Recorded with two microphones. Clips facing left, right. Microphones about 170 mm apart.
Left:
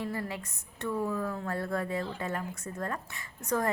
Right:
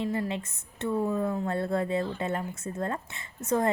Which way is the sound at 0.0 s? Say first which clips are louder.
Right 5 dB; 20° right (ahead or behind).